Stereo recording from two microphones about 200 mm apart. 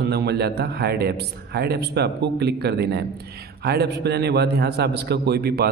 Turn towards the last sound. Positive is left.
turn(degrees=-50)  # may be behind; listen again after turning